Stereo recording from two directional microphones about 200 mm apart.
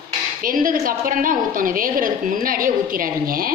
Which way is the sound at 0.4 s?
45° right (ahead or behind).